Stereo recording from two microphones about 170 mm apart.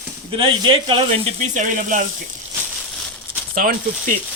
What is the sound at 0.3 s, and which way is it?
Speech, 30° right (ahead or behind).